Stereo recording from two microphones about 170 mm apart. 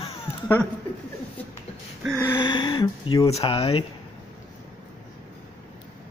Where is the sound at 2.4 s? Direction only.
30° left (ahead or behind).